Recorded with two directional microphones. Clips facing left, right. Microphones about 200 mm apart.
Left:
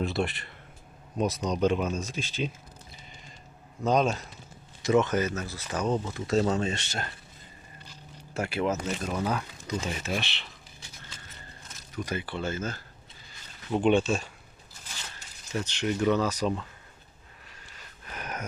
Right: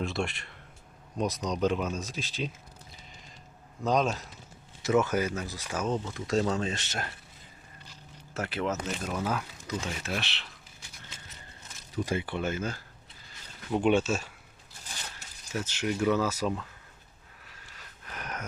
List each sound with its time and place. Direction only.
0.0 s speech: centre (ahead or behind)
3.8 s speech: centre (ahead or behind)
8.3 s speech: 10° left (ahead or behind)
9.0 s speech: centre (ahead or behind)
11.9 s speech: 25° right (ahead or behind); by 14.3 s 5° right (ahead or behind)
15.5 s speech: 5° right (ahead or behind)
17.4 s a sound: centre (ahead or behind)